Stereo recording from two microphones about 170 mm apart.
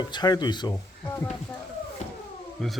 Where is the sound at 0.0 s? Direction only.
25° left (ahead or behind).